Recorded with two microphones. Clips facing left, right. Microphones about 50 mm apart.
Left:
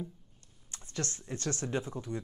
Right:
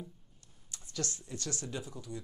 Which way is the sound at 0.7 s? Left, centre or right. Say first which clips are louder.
Left 2 dB; left.